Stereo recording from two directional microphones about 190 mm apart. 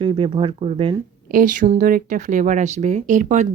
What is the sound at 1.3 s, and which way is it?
Speech, 45° right (ahead or behind).